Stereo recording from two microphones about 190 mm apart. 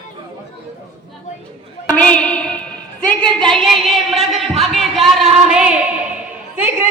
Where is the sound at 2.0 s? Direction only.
5° left (ahead or behind).